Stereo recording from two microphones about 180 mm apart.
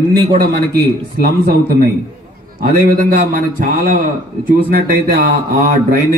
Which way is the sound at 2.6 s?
55° right (ahead or behind).